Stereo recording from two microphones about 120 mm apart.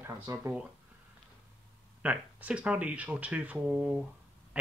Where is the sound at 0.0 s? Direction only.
20° right (ahead or behind).